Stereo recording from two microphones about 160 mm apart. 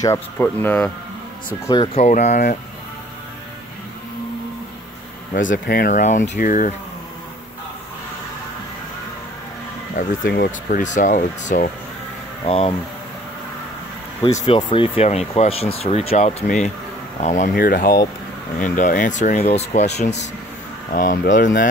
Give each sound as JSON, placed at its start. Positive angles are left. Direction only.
{"t": 0.0, "sound": "speech", "side_deg": 15}
{"t": 2.0, "sound": "speech", "side_deg": 45}
{"t": 5.3, "sound": "speech", "side_deg": 55}
{"t": 9.9, "sound": "speech", "side_deg": 65}
{"t": 10.8, "sound": "speech", "side_deg": 50}
{"t": 12.4, "sound": "speech", "side_deg": 35}
{"t": 14.2, "sound": "speech", "side_deg": 35}
{"t": 17.6, "sound": "speech", "side_deg": 65}
{"t": 18.6, "sound": "speech", "side_deg": 55}
{"t": 20.9, "sound": "speech", "side_deg": 60}